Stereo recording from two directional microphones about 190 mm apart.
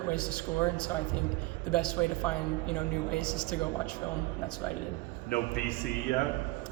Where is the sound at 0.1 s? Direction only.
5° left (ahead or behind).